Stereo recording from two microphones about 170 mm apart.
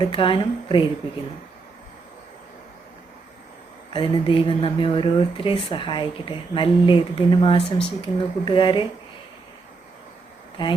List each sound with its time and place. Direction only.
0.1 s speech: 30° left (ahead or behind)
3.9 s speech: 30° left (ahead or behind)
10.6 s speech: 30° left (ahead or behind)